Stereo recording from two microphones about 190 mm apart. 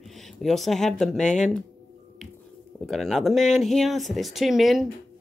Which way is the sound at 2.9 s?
Centre (ahead or behind).